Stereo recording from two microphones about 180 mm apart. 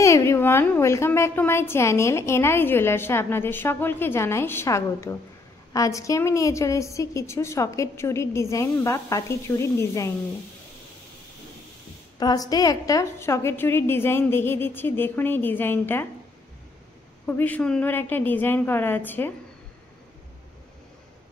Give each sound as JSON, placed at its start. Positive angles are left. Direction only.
{"t": 0.0, "sound": "a woman's voice", "side_deg": 15}
{"t": 12.2, "sound": "a woman's voice", "side_deg": 20}
{"t": 17.3, "sound": "a woman's voice", "side_deg": 10}